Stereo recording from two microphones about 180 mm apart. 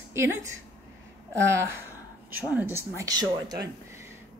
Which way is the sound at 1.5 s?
15° right (ahead or behind).